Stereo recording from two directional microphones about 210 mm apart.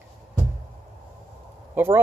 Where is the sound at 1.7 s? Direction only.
10° right (ahead or behind).